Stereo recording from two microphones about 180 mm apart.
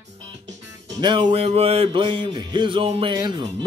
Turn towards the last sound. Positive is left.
turn(degrees=-25)  # may be behind; listen again after turning